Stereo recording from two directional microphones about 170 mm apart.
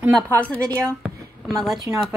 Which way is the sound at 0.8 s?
Centre (ahead or behind).